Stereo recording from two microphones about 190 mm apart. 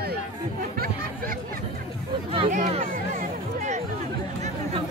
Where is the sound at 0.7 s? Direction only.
50° right (ahead or behind).